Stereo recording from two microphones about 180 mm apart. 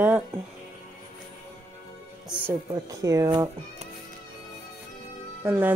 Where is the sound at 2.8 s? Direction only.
20° right (ahead or behind).